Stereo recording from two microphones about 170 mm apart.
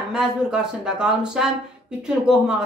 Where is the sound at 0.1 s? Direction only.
5° right (ahead or behind).